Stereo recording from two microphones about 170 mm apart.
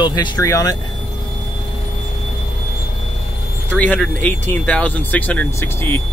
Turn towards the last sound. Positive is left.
turn(degrees=15)  # may be behind; listen again after turning